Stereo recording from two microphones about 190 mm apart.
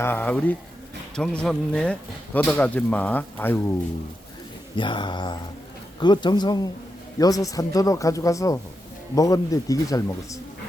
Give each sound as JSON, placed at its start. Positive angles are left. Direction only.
{"t": 0.0, "sound": "speech", "side_deg": 10}
{"t": 4.8, "sound": "speech", "side_deg": 25}